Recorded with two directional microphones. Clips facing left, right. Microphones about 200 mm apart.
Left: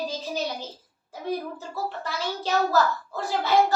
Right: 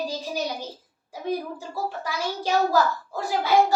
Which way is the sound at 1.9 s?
10° right (ahead or behind).